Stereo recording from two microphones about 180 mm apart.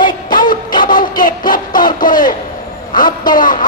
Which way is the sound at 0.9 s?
50° left (ahead or behind).